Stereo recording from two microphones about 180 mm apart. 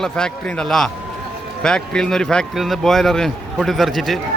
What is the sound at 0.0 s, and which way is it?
Speech, 5° left (ahead or behind).